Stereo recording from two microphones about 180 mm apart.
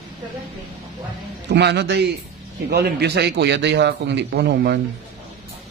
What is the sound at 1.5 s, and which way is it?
A man's voice, 70° right (ahead or behind).